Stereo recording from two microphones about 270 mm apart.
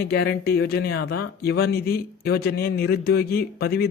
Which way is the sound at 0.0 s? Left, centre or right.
Left.